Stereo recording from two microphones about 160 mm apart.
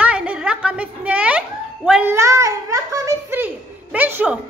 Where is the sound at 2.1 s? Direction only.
20° right (ahead or behind).